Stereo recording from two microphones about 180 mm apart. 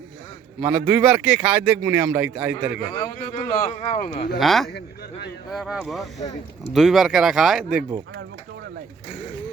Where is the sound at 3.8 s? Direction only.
40° left (ahead or behind).